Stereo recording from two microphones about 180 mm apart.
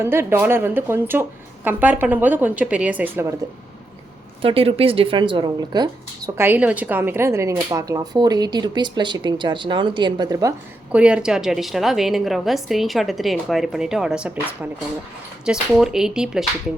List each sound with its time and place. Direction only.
0.0 s speech: 15° right (ahead or behind)
4.4 s speech: 30° right (ahead or behind)
10.9 s a woman's voice: 5° right (ahead or behind)